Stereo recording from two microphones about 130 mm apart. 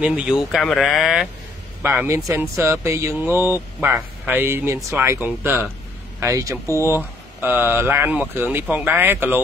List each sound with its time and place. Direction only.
0.0 s speech: 10° right (ahead or behind)
1.8 s speech: 15° right (ahead or behind)